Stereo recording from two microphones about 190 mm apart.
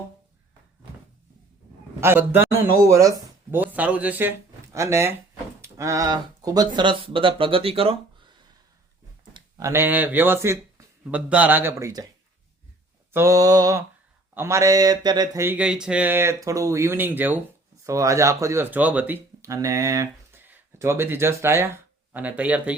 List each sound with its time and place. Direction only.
2.0 s speech: 10° right (ahead or behind); by 7.9 s 30° right (ahead or behind)
9.3 s speech: 15° right (ahead or behind)
13.1 s a sound: 15° right (ahead or behind)
17.8 s speech: 15° right (ahead or behind)